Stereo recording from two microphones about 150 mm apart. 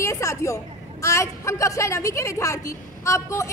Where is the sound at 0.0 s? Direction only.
20° left (ahead or behind).